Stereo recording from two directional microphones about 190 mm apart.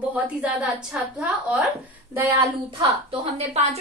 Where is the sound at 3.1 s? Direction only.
35° right (ahead or behind).